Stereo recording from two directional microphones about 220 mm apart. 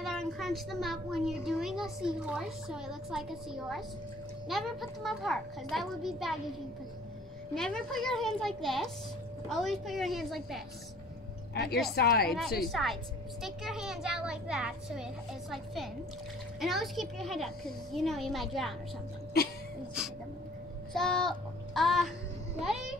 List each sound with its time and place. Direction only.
0.0 s a child's voice: centre (ahead or behind)
7.5 s a child's voice: centre (ahead or behind)
11.5 s a woman's voice: 50° left (ahead or behind)
12.4 s a child's voice: centre (ahead or behind)
19.4 s a woman's voice: 45° left (ahead or behind)
20.0 s a child's voice: 5° right (ahead or behind)
20.9 s child singing: centre (ahead or behind)
22.6 s a child's voice: centre (ahead or behind)